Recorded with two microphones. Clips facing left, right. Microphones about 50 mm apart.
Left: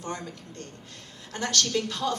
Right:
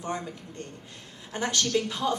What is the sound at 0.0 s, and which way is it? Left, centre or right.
A woman's voice, centre.